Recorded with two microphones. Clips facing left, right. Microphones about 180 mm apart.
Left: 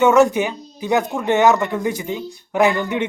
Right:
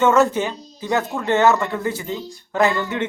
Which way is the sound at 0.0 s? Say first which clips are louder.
Left 3 dB; 15° left (ahead or behind).